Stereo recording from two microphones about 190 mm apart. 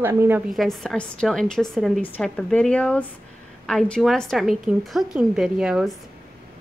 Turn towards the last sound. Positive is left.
turn(degrees=-5)  # may be behind; listen again after turning